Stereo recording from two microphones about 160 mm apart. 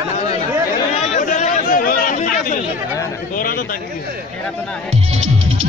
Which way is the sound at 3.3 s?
60° left (ahead or behind).